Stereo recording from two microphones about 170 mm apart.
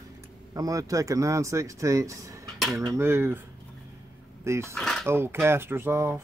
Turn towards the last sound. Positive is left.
turn(degrees=-15)  # may be behind; listen again after turning